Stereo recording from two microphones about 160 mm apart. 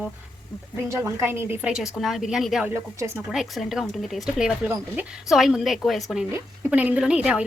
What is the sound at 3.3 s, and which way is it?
Speech, centre (ahead or behind).